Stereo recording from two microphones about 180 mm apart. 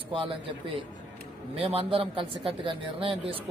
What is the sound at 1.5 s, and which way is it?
Speech, 30° right (ahead or behind).